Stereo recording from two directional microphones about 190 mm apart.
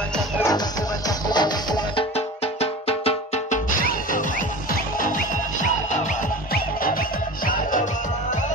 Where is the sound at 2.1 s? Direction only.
35° left (ahead or behind).